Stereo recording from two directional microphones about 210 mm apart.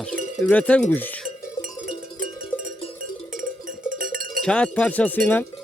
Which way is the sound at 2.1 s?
40° right (ahead or behind).